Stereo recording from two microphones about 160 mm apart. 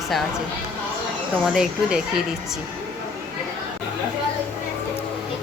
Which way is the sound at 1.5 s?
5° right (ahead or behind).